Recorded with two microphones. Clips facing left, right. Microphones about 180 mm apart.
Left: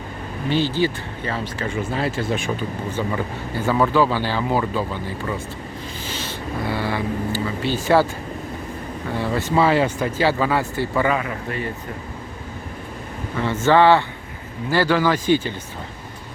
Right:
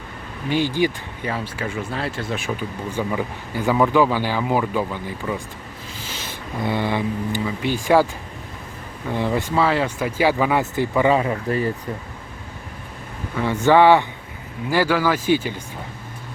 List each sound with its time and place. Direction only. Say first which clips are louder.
0.5 s speech: even; 15° right (ahead or behind)
6.7 s speech: right 3 dB; 20° right (ahead or behind)
9.1 s speech: right 2 dB; 15° right (ahead or behind)
9.6 s speech: left 4 dB; 5° left (ahead or behind)
10.2 s speech: right 2 dB; 15° right (ahead or behind)
11.1 s speech: right 5 dB; 30° right (ahead or behind)
13.4 s speech: right 1 dB; 15° right (ahead or behind)